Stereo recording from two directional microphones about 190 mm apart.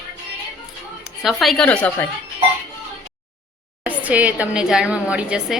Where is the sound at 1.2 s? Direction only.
Centre (ahead or behind).